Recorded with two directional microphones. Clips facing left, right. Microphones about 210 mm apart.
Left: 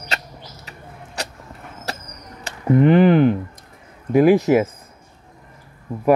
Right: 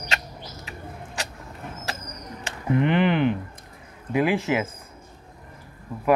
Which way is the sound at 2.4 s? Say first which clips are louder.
Left 7 dB; 40° left (ahead or behind).